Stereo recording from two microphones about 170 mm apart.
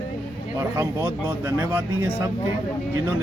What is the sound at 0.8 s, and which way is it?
Speech, 15° right (ahead or behind).